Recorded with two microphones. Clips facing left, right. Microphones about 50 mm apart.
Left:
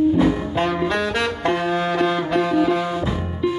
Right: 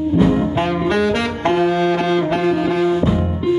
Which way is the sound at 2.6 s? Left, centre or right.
Centre.